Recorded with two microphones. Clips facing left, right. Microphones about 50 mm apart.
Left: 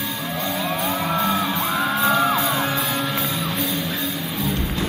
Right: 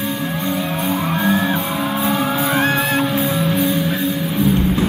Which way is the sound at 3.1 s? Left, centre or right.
Right.